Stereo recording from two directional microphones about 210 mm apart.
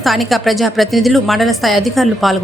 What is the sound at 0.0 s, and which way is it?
A woman's voice, centre (ahead or behind).